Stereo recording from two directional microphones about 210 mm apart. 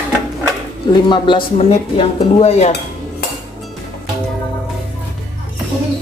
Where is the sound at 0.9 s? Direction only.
20° left (ahead or behind).